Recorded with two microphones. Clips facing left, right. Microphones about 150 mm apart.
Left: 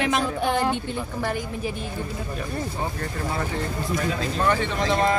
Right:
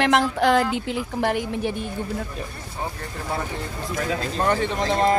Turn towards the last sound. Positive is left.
turn(degrees=-35)  # may be behind; listen again after turning